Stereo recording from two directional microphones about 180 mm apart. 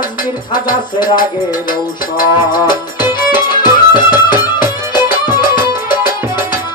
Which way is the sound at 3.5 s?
25° left (ahead or behind).